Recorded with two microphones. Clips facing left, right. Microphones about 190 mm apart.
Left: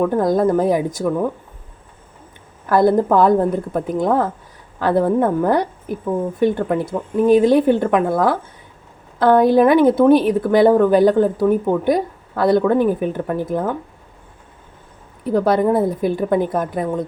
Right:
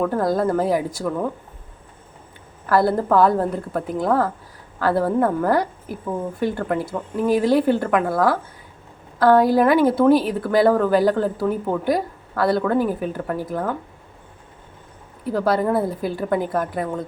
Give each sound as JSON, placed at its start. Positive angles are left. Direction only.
{"t": 0.0, "sound": "a woman's voice", "side_deg": 20}
{"t": 2.6, "sound": "a woman's voice", "side_deg": 20}
{"t": 15.2, "sound": "a woman's voice", "side_deg": 20}